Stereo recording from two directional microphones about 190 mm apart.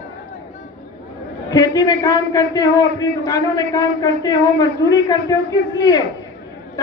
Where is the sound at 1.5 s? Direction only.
20° left (ahead or behind).